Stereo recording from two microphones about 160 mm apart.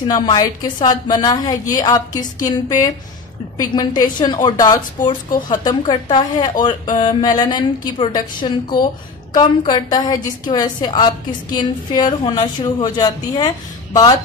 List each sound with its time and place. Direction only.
0.1 s a woman's voice: 25° left (ahead or behind)